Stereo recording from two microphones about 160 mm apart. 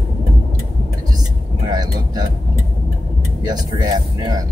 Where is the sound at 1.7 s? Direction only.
25° right (ahead or behind).